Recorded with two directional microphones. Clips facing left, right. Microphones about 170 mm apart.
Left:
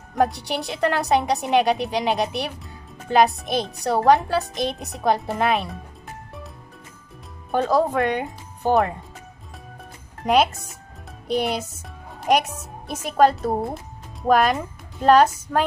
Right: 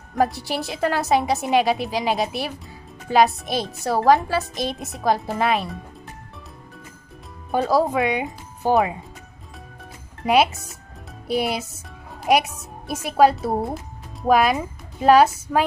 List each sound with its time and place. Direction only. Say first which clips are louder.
0.1 s a woman's voice: even; centre (ahead or behind)
7.5 s speech: even; 5° right (ahead or behind)
10.2 s a woman's voice: right 1 dB; 5° right (ahead or behind)